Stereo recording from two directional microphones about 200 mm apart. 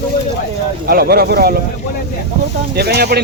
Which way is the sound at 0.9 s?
50° right (ahead or behind).